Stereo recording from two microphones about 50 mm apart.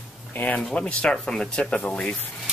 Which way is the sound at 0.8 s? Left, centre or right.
Left.